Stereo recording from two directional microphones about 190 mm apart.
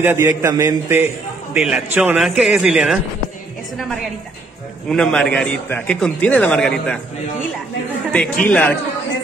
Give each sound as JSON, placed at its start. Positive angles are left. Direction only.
{"t": 0.0, "sound": "a man's voice", "side_deg": -15}
{"t": 4.8, "sound": "a man's voice", "side_deg": 5}
{"t": 8.1, "sound": "a man's voice", "side_deg": 5}